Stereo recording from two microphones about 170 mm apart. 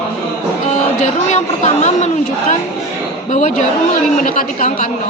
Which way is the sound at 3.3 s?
45° left (ahead or behind).